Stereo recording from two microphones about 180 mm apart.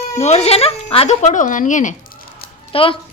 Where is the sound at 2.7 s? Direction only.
30° left (ahead or behind).